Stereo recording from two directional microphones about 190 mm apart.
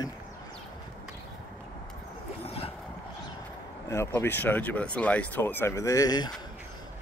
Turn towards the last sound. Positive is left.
turn(degrees=20)  # may be behind; listen again after turning